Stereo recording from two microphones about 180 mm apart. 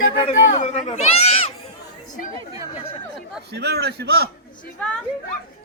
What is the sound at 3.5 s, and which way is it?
Speech, 65° right (ahead or behind).